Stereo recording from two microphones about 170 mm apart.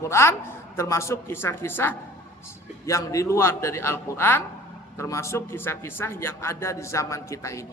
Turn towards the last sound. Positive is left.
turn(degrees=20)  # may be behind; listen again after turning